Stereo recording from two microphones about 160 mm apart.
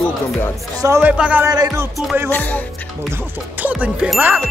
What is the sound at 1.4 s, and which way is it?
Music, 20° right (ahead or behind).